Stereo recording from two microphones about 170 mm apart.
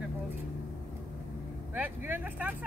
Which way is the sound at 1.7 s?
10° right (ahead or behind).